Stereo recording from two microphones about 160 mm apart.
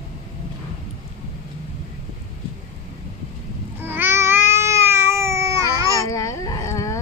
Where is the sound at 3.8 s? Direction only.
15° right (ahead or behind).